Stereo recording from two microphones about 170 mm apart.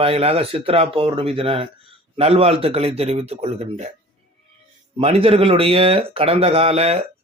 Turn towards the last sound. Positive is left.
turn(degrees=-35)  # may be behind; listen again after turning